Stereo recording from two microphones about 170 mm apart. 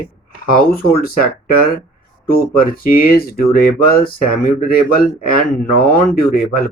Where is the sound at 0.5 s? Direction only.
60° left (ahead or behind).